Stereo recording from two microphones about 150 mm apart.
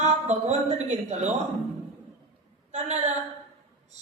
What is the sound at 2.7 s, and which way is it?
Speech, 50° right (ahead or behind).